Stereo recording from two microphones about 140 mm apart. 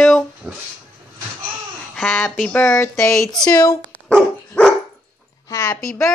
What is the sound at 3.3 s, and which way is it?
Speech, 5° left (ahead or behind).